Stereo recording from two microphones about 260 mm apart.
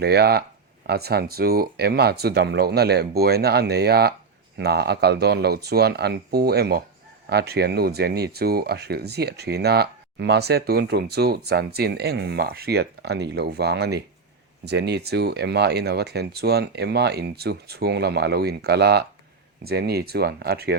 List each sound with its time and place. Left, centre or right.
0.0 s speech: right